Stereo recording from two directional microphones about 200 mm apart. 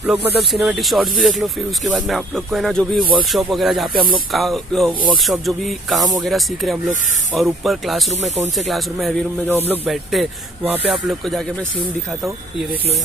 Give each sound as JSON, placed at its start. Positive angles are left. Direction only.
{"t": 0.0, "sound": "speech", "side_deg": 0}
{"t": 8.1, "sound": "speech", "side_deg": -35}
{"t": 8.5, "sound": "speech", "side_deg": 0}
{"t": 9.5, "sound": "speech", "side_deg": -10}